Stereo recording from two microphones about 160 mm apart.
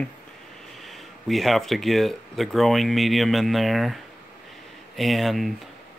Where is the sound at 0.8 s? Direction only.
Centre (ahead or behind).